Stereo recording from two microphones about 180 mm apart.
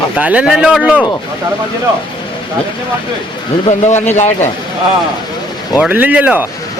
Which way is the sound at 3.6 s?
40° left (ahead or behind).